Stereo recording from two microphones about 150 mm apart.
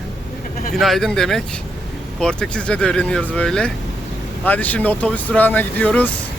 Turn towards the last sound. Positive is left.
turn(degrees=10)  # may be behind; listen again after turning